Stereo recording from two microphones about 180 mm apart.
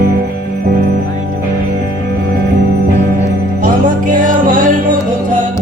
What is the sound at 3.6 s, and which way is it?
Music, 50° right (ahead or behind).